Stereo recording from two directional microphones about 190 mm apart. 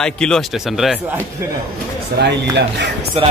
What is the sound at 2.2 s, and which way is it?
Speech, 60° right (ahead or behind).